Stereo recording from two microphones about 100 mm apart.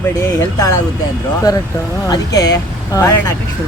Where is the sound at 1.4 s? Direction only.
40° left (ahead or behind).